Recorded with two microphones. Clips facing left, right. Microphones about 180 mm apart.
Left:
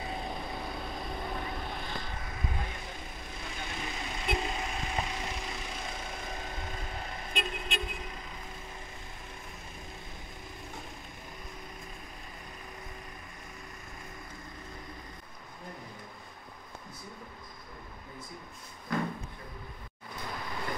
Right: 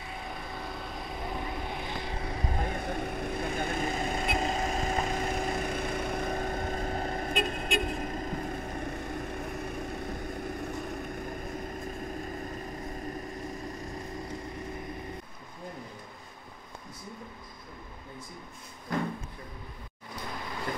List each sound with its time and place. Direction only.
1.1 s vehicle: 5° right (ahead or behind)
2.0 s vehicle: 30° right (ahead or behind); by 11.3 s 55° right (ahead or behind)